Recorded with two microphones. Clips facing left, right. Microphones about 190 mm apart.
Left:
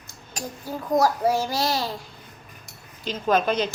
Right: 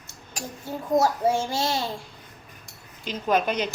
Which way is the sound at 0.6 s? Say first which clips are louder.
Left 1 dB; 25° right (ahead or behind).